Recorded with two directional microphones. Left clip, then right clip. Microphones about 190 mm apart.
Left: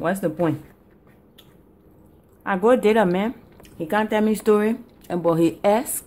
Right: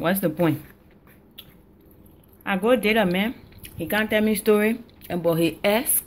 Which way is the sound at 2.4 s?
15° left (ahead or behind).